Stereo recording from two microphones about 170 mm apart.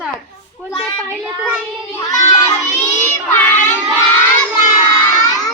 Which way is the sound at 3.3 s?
10° left (ahead or behind).